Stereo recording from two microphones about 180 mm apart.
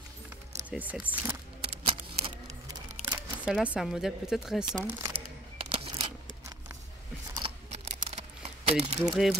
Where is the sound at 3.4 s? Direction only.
5° right (ahead or behind).